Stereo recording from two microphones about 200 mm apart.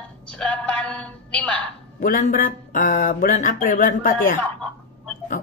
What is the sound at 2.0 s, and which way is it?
Speech, 40° left (ahead or behind).